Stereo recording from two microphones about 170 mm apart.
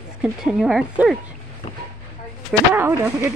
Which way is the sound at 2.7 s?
15° right (ahead or behind).